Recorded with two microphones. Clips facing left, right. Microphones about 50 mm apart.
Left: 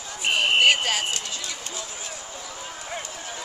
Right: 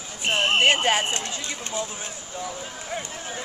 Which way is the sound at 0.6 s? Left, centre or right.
Right.